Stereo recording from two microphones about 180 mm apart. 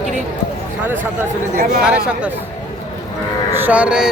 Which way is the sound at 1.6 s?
55° right (ahead or behind).